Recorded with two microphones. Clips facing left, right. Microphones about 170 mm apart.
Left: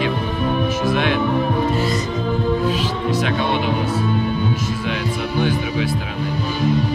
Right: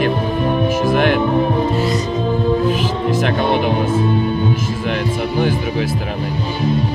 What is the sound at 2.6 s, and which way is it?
Music, 50° right (ahead or behind).